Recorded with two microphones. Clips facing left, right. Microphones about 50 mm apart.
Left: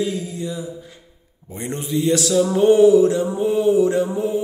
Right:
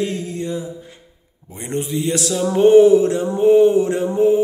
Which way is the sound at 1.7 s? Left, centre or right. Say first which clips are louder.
Left 1 dB; right.